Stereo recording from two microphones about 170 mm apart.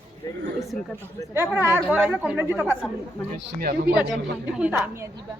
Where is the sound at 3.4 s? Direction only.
65° right (ahead or behind).